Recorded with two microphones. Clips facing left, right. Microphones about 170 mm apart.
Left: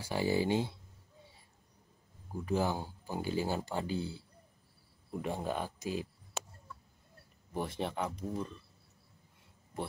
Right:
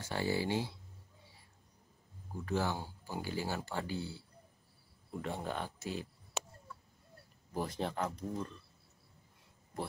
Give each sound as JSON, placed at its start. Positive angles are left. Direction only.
{"t": 0.0, "sound": "speech", "side_deg": 10}
{"t": 2.4, "sound": "speech", "side_deg": 15}
{"t": 5.2, "sound": "speech", "side_deg": 15}
{"t": 7.5, "sound": "speech", "side_deg": 0}